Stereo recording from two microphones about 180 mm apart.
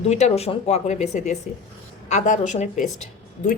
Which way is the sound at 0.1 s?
40° left (ahead or behind).